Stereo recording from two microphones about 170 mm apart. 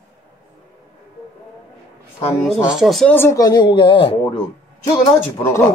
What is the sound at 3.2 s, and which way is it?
Speech, 20° left (ahead or behind).